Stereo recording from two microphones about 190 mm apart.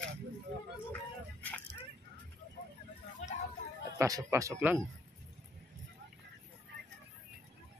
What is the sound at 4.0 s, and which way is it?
Speech, 15° right (ahead or behind).